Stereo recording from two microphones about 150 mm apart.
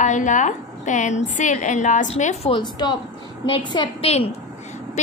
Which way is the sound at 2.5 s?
30° left (ahead or behind).